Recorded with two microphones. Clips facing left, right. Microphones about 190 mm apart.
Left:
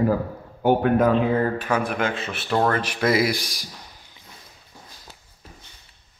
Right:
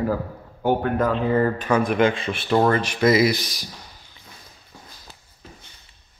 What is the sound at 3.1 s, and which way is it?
Speech, 10° left (ahead or behind).